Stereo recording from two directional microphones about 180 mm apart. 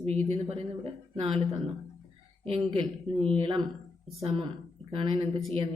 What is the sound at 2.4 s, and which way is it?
A woman's voice, 30° right (ahead or behind).